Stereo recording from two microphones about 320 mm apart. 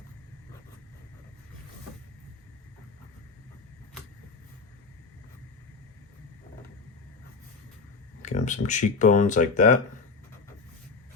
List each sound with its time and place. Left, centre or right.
8.2 s speech: left